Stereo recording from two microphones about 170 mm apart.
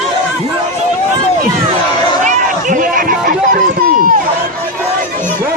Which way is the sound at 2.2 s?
50° right (ahead or behind).